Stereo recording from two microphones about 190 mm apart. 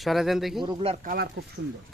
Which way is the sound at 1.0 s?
50° right (ahead or behind).